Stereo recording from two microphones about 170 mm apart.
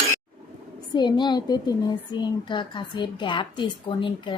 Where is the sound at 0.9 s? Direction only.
25° left (ahead or behind).